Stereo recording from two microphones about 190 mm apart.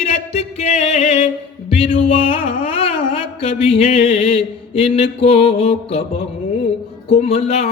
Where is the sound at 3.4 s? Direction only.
30° left (ahead or behind).